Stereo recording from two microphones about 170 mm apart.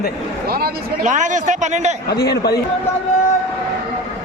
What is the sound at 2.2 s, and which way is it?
Speech, 70° left (ahead or behind).